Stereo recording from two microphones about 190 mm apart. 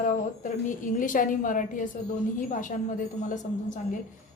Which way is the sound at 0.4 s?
45° left (ahead or behind).